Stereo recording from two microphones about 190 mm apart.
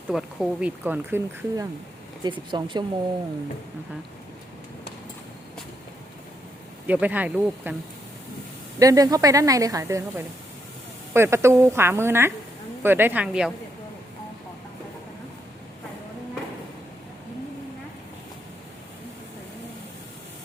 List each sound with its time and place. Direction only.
0.1 s speech: 5° right (ahead or behind)
2.2 s speech: 25° right (ahead or behind)
6.8 s speech: 10° right (ahead or behind)
8.8 s speech: 20° right (ahead or behind)